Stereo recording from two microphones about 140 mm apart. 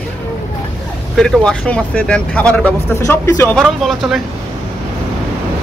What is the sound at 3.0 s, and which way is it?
Speech, 20° left (ahead or behind).